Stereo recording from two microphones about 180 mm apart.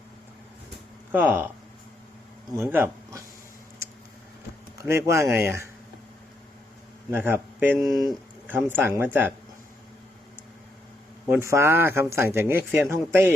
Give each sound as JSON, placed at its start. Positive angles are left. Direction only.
{"t": 1.1, "sound": "speech", "side_deg": -10}
{"t": 2.6, "sound": "speech", "side_deg": -10}
{"t": 4.8, "sound": "speech", "side_deg": -15}
{"t": 7.1, "sound": "speech", "side_deg": -10}
{"t": 11.3, "sound": "speech", "side_deg": -15}